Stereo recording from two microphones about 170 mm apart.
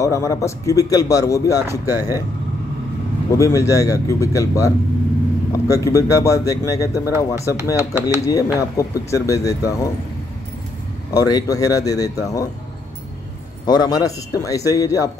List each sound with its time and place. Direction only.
0.0 s speech: 20° left (ahead or behind)
1.7 s speech: 15° right (ahead or behind)
3.3 s speech: 20° left (ahead or behind)
11.1 s speech: 20° left (ahead or behind)
13.7 s speech: 25° left (ahead or behind)